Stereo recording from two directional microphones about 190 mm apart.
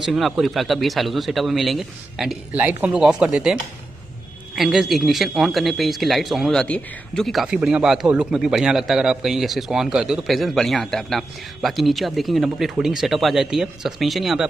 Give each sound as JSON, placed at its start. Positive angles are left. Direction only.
{"t": 0.0, "sound": "a man's voice", "side_deg": 0}
{"t": 4.6, "sound": "a man's voice", "side_deg": 0}